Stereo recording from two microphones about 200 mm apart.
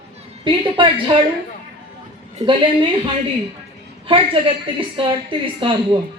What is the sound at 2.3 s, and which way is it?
Speech, 25° right (ahead or behind).